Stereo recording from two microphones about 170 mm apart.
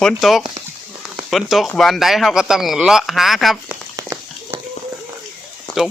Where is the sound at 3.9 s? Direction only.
15° right (ahead or behind).